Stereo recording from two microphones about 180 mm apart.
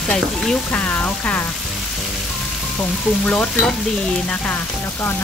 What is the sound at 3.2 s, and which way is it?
Frying, 5° left (ahead or behind).